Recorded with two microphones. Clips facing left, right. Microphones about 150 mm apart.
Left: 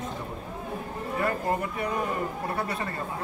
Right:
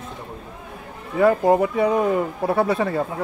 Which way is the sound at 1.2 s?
90° right.